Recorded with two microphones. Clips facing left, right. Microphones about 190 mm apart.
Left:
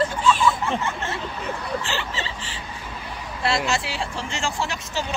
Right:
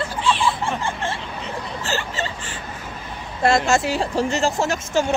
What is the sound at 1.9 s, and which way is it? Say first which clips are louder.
Vehicle: right 3 dB; 45° right (ahead or behind).